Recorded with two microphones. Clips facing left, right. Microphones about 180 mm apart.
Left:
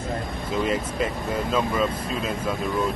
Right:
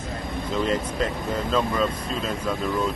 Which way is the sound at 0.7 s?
10° left (ahead or behind).